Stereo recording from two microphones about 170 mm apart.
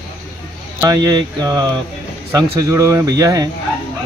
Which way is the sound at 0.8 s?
20° right (ahead or behind).